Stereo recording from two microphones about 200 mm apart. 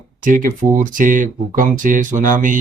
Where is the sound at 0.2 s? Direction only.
40° right (ahead or behind).